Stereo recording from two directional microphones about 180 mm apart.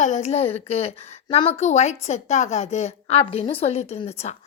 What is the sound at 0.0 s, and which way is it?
A woman's voice, 40° left (ahead or behind).